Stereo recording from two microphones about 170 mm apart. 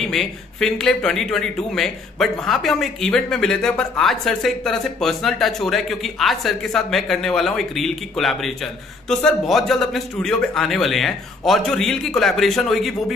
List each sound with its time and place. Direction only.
0.0 s speech: centre (ahead or behind)